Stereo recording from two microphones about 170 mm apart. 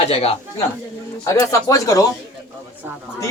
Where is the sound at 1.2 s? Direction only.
15° left (ahead or behind).